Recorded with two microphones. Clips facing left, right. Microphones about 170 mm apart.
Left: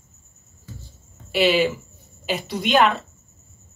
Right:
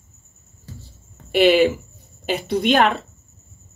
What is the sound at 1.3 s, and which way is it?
Speech, 50° right (ahead or behind).